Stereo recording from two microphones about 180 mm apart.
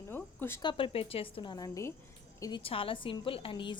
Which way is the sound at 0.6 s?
25° left (ahead or behind).